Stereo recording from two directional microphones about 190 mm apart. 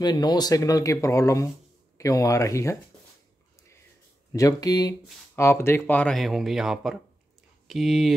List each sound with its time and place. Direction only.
0.0 s speech: 20° left (ahead or behind)
4.3 s speech: 20° left (ahead or behind); by 8.1 s centre (ahead or behind)